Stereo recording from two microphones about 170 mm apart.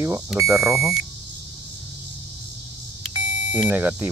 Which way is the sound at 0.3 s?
5° right (ahead or behind).